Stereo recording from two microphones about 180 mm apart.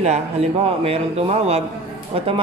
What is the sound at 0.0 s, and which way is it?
Speech, 40° right (ahead or behind).